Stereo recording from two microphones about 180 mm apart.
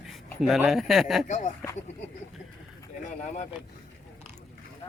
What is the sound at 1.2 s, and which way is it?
Speech, 45° left (ahead or behind).